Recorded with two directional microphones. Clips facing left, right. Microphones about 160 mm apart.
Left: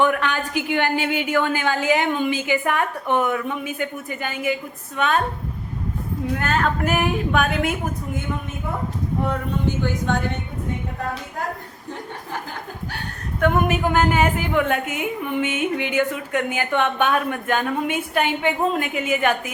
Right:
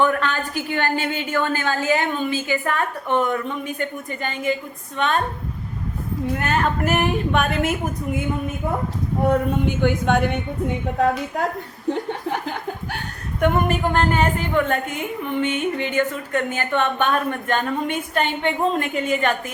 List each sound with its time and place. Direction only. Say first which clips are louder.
0.0 s a woman's voice: even; 15° left (ahead or behind)
6.3 s a woman's voice: even; 5° right (ahead or behind)
9.6 s a woman's voice: right 3 dB; 60° right (ahead or behind)
11.9 s speech: right 9 dB; 65° right (ahead or behind)
13.5 s a woman's voice: left 2 dB; 5° left (ahead or behind)